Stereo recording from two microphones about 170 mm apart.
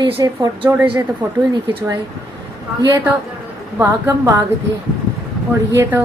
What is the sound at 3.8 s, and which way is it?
Speech, 15° right (ahead or behind).